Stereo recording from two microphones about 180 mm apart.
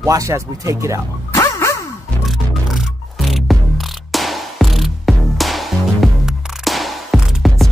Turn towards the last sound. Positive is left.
turn(degrees=0)  # may be behind; listen again after turning